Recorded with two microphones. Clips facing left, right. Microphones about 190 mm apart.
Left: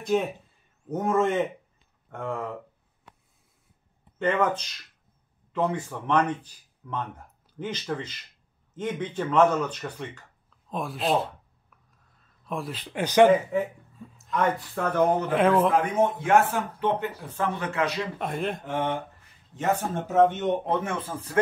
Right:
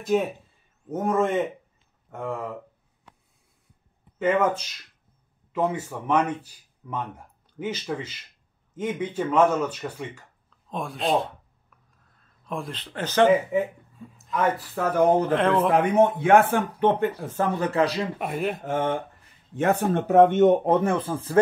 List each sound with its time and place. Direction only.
0.1 s a man's voice: 5° right (ahead or behind)
4.2 s a man's voice: 5° right (ahead or behind)
12.4 s speech: centre (ahead or behind)
13.3 s a man's voice: 10° right (ahead or behind)
15.3 s a man's voice: 5° left (ahead or behind)
15.7 s speech: 65° right (ahead or behind)
17.6 s a man's voice: 35° right (ahead or behind)
18.2 s a man's voice: 5° right (ahead or behind)
18.6 s speech: 45° right (ahead or behind)
19.5 s speech: 60° right (ahead or behind); by 21.4 s 30° right (ahead or behind)